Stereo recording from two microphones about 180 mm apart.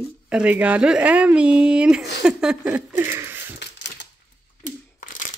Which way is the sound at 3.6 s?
75° left (ahead or behind).